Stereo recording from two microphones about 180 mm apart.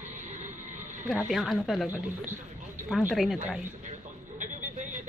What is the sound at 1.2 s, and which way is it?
A woman's voice, centre (ahead or behind).